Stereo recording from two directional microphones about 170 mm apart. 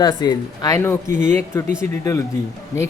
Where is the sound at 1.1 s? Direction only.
45° right (ahead or behind).